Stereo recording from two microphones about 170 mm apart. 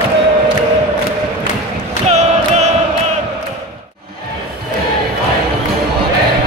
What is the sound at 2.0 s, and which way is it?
Choir, 40° right (ahead or behind).